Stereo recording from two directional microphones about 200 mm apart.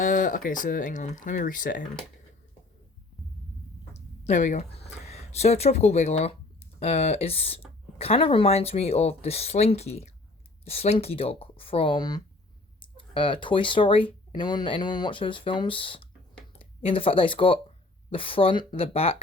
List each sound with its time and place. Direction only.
0.0 s speech: 40° left (ahead or behind)
4.3 s speech: 35° left (ahead or behind)